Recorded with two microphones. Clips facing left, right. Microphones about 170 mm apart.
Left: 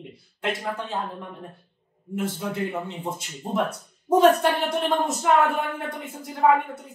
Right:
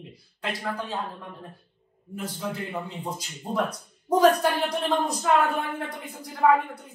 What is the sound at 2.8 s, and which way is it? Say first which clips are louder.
Speech: left 2 dB; 25° left (ahead or behind).